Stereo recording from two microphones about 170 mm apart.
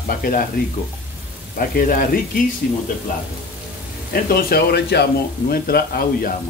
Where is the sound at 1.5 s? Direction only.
55° left (ahead or behind).